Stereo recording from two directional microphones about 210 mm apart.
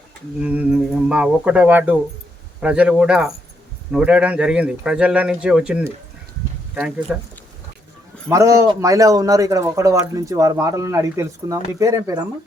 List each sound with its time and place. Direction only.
0.4 s a man's voice: 5° right (ahead or behind)
8.3 s a man's voice: 15° right (ahead or behind)